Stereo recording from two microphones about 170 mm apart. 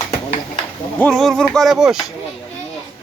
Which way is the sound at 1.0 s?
Centre (ahead or behind).